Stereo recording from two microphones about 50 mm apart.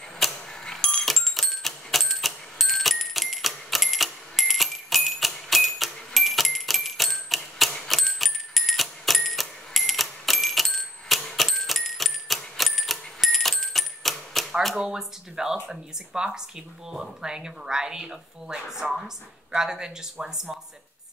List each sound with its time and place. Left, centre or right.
0.2 s doorbell: centre
7.7 s cash register: centre
14.8 s speech: centre